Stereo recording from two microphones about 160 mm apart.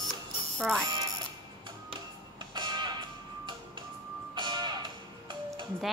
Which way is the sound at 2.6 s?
25° right (ahead or behind).